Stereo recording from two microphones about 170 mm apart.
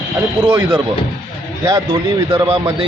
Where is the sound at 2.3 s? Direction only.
30° right (ahead or behind).